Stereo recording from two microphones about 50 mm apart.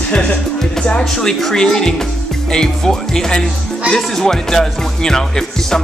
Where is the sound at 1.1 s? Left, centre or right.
Centre.